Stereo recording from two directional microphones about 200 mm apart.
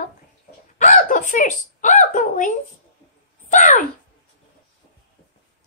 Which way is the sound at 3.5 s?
40° left (ahead or behind).